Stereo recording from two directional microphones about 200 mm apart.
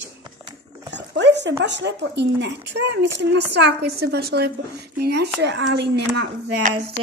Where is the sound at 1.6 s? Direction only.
60° right (ahead or behind).